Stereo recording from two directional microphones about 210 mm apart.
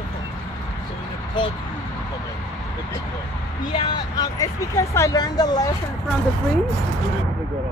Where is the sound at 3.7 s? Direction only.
20° left (ahead or behind).